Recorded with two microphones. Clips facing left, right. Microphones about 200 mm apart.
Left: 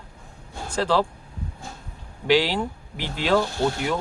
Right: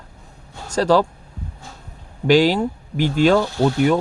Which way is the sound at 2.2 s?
45° right (ahead or behind).